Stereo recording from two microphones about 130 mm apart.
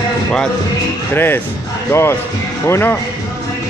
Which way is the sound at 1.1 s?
15° left (ahead or behind).